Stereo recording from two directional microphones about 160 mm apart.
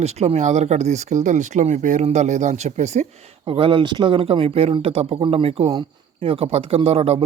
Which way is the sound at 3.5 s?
35° right (ahead or behind).